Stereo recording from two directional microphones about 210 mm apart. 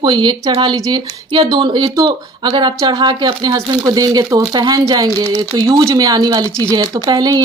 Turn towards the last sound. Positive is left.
turn(degrees=-20)  # may be behind; listen again after turning